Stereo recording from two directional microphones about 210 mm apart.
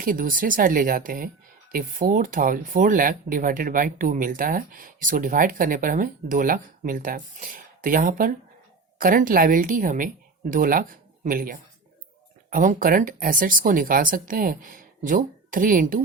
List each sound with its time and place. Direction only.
0.0 s speech: 40° right (ahead or behind)